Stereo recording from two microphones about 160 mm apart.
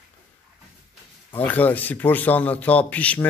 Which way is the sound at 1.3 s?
10° left (ahead or behind).